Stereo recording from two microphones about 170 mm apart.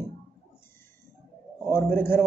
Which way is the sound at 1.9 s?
55° right (ahead or behind).